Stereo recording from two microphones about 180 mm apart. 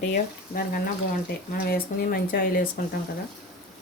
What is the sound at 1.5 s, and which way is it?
Speech, 55° left (ahead or behind).